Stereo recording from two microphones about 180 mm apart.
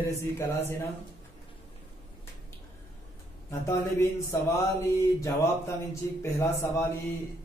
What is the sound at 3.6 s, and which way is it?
Mantra, 15° left (ahead or behind).